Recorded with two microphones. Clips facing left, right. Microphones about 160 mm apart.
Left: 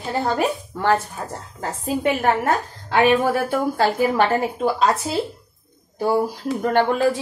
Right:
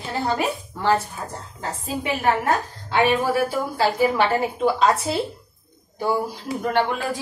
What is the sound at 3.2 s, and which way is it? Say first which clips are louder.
A woman's voice: left 2 dB; 50° left (ahead or behind).